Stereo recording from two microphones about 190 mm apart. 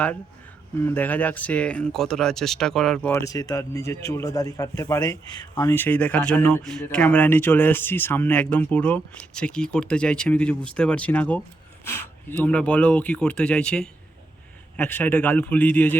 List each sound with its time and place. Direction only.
0.9 s speech: 10° left (ahead or behind)